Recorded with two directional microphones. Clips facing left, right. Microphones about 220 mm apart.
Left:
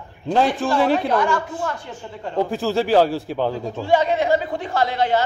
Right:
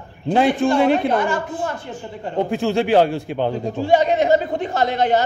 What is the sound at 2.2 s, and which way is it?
Speech, 20° right (ahead or behind).